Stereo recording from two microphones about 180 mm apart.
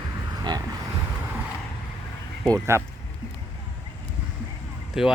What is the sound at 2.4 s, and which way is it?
Speech, 15° right (ahead or behind).